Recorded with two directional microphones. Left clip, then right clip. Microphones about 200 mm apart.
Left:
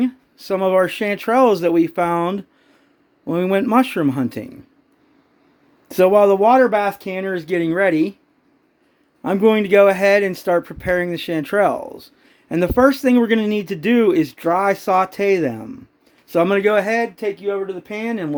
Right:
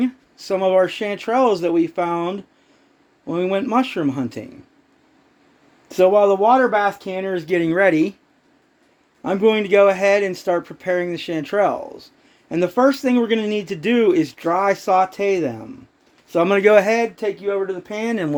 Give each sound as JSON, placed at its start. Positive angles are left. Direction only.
{"t": 0.0, "sound": "speech", "side_deg": 15}
{"t": 5.9, "sound": "speech", "side_deg": 30}
{"t": 6.7, "sound": "speech", "side_deg": 15}
{"t": 9.2, "sound": "speech", "side_deg": 20}
{"t": 16.5, "sound": "speech", "side_deg": 0}